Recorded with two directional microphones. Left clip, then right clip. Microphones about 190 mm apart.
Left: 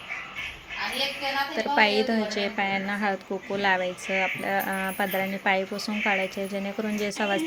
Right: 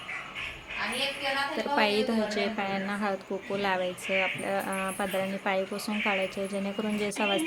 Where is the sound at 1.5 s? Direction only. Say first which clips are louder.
Left 6 dB; centre (ahead or behind).